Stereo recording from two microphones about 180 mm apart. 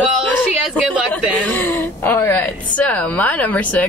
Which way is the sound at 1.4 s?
10° left (ahead or behind).